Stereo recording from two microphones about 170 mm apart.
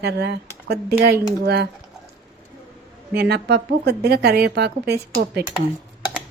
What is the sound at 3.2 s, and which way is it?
A woman's voice, 70° right (ahead or behind).